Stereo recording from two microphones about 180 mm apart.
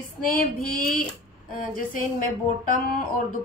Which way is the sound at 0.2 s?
50° left (ahead or behind).